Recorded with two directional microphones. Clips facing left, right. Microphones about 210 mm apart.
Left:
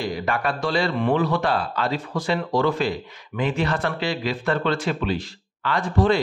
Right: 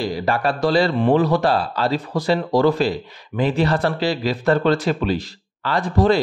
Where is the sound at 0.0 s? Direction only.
35° right (ahead or behind).